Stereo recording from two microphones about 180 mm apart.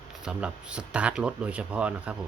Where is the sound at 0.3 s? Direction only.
5° right (ahead or behind).